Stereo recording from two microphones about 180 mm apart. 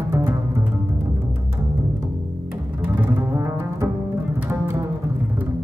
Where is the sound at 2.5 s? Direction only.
10° right (ahead or behind).